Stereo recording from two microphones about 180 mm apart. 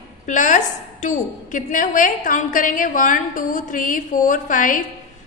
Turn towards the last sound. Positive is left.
turn(degrees=45)  # may be behind; listen again after turning